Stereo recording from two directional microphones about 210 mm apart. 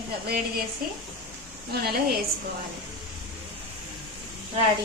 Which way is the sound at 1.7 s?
45° right (ahead or behind).